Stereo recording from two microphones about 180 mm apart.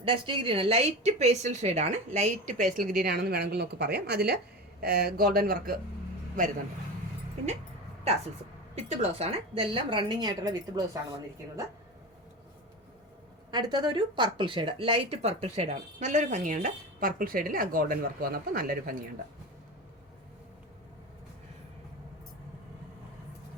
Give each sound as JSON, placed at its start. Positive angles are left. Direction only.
{"t": 0.0, "sound": "a woman's voice", "side_deg": -30}
{"t": 8.7, "sound": "a woman's voice", "side_deg": -40}
{"t": 13.5, "sound": "a woman's voice", "side_deg": -25}